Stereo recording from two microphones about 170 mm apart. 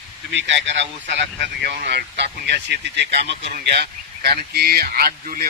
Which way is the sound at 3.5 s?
70° right (ahead or behind).